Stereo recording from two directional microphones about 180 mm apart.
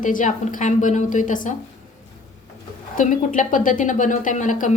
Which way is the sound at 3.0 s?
45° left (ahead or behind).